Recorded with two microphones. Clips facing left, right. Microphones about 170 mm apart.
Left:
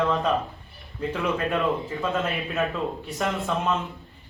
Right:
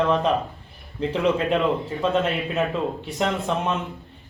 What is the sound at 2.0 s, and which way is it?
A man's voice, 20° right (ahead or behind).